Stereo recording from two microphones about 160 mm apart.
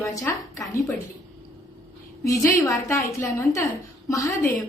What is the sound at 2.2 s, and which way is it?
A woman's voice, 20° left (ahead or behind).